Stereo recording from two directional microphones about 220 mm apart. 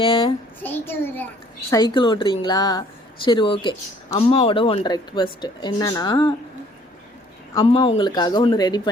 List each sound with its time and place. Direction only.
0.0 s a child's voice: 25° left (ahead or behind)
0.6 s a child's voice: 10° left (ahead or behind)
1.7 s speech: 20° left (ahead or behind)
7.6 s speech: 25° left (ahead or behind)